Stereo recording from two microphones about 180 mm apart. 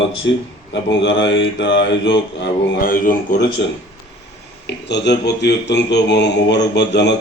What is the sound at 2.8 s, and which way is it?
Speech, 50° left (ahead or behind).